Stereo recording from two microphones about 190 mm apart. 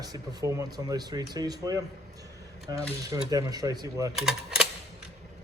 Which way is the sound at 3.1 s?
20° right (ahead or behind).